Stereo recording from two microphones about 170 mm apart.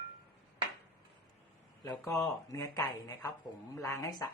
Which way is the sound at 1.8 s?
15° left (ahead or behind).